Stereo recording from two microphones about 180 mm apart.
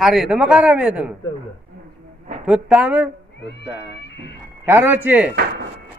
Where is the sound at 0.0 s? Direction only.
Centre (ahead or behind).